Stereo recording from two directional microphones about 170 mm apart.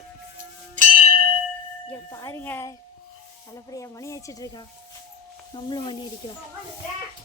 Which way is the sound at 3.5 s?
20° left (ahead or behind).